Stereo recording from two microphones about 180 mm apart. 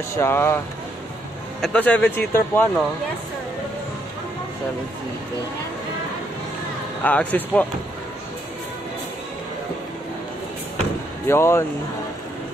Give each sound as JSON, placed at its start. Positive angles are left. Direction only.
{"t": 0.1, "sound": "speech", "side_deg": 15}
{"t": 1.6, "sound": "speech", "side_deg": 5}
{"t": 7.0, "sound": "speech", "side_deg": 10}
{"t": 11.2, "sound": "speech", "side_deg": 15}